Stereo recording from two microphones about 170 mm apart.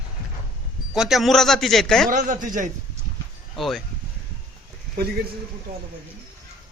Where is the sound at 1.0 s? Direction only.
Centre (ahead or behind).